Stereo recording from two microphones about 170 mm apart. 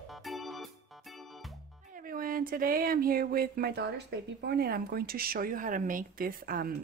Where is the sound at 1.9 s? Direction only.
55° right (ahead or behind).